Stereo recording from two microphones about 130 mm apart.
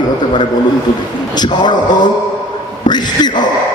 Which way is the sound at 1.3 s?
35° left (ahead or behind).